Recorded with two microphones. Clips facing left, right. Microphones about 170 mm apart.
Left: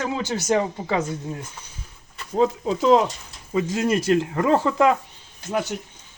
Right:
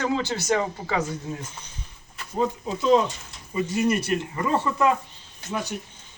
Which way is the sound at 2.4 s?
90° left.